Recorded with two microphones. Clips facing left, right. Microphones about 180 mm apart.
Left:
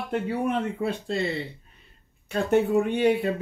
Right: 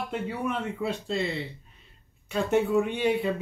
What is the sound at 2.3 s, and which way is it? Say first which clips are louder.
Speech: left 2 dB; 55° left (ahead or behind).